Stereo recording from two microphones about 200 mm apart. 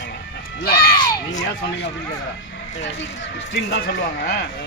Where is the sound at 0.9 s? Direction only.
20° left (ahead or behind).